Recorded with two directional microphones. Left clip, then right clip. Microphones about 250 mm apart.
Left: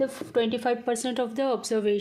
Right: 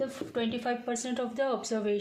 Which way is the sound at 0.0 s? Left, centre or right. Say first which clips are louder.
Left 7 dB; left.